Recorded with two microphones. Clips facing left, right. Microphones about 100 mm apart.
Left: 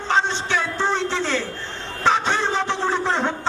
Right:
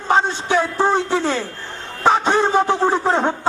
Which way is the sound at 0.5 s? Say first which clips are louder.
Right 7 dB; 45° right (ahead or behind).